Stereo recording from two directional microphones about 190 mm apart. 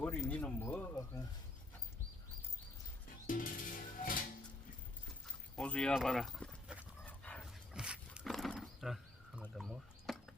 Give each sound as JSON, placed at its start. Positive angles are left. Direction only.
{"t": 0.0, "sound": "speech", "side_deg": 10}
{"t": 3.2, "sound": "music", "side_deg": 45}
{"t": 5.5, "sound": "dog", "side_deg": 5}
{"t": 7.7, "sound": "wild animals", "side_deg": -5}
{"t": 9.4, "sound": "a sound", "side_deg": 0}